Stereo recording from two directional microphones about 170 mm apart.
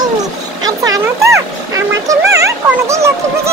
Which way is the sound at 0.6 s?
20° right (ahead or behind).